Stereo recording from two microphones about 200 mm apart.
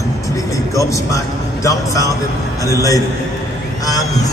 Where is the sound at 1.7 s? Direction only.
15° left (ahead or behind).